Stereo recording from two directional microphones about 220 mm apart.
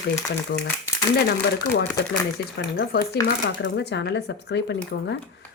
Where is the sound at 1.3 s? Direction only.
50° left (ahead or behind).